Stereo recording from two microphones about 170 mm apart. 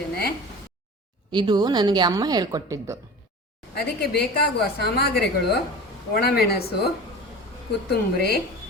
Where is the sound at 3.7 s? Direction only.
70° left (ahead or behind).